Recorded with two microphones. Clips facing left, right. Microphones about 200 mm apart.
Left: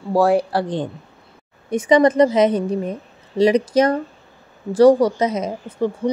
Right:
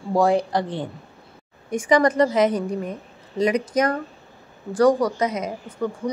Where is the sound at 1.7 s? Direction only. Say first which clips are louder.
Left 4 dB; 20° left (ahead or behind).